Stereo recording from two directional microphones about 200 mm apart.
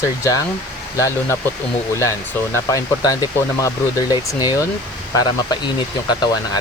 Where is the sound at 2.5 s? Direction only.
15° left (ahead or behind).